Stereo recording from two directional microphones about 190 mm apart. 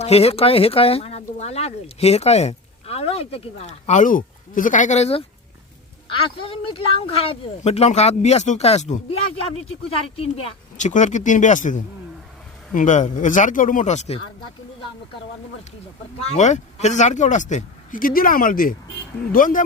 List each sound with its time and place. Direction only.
0.0 s speech: 30° left (ahead or behind)
10.8 s speech: 40° left (ahead or behind)
16.1 s speech: 35° left (ahead or behind)